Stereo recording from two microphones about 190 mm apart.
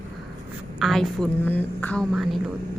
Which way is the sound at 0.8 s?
Centre (ahead or behind).